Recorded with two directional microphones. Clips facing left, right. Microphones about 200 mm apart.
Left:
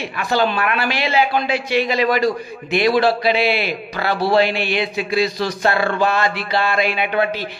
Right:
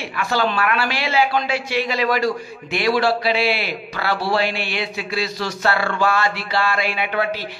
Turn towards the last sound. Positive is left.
turn(degrees=20)  # may be behind; listen again after turning